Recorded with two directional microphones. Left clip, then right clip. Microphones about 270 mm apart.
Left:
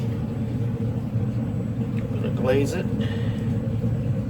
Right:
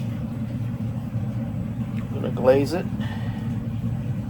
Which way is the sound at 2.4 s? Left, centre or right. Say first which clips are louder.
Right 5 dB; centre.